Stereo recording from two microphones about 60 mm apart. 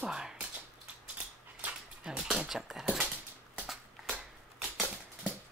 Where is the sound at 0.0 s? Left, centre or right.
Centre.